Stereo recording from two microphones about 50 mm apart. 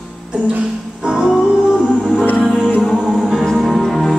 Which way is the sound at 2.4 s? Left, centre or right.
Right.